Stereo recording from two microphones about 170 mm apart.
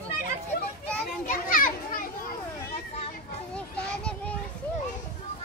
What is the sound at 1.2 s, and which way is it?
Children playing, 55° left (ahead or behind).